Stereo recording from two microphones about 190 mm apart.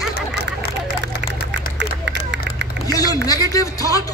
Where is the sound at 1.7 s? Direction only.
70° right (ahead or behind).